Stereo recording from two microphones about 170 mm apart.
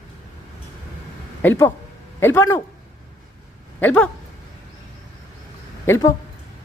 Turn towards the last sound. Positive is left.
turn(degrees=15)  # may be behind; listen again after turning